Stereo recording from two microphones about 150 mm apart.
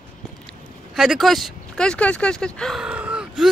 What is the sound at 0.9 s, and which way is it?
Speech, centre (ahead or behind).